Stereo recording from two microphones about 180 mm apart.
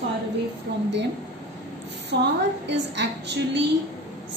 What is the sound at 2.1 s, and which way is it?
A woman's voice, 65° right (ahead or behind).